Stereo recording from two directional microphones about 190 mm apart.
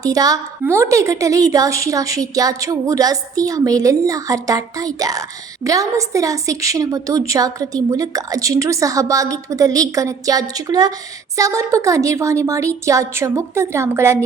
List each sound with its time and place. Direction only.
0.0 s a woman's voice: 20° right (ahead or behind)